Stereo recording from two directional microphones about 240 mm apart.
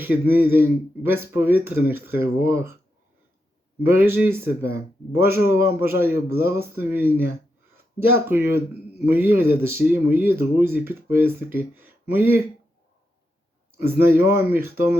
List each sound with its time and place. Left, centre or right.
0.0 s a man's voice: centre
3.8 s a man's voice: centre
13.7 s a man's voice: centre